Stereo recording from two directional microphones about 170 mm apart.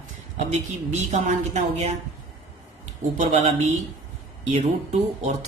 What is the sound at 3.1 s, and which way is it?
Speech, 40° right (ahead or behind).